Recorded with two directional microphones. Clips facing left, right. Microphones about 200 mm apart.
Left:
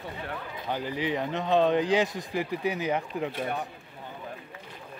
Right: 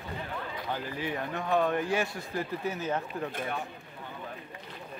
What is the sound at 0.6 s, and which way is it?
Speech, 20° left (ahead or behind).